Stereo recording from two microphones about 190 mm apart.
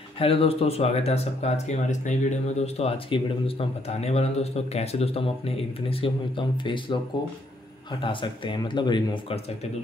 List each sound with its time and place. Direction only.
0.2 s speech: 30° left (ahead or behind)
8.0 s speech: 25° left (ahead or behind)